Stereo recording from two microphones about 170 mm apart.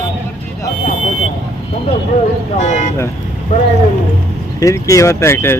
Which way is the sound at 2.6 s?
45° left (ahead or behind).